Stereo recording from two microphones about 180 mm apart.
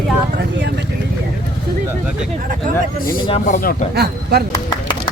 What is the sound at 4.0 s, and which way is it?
Speech, 60° right (ahead or behind).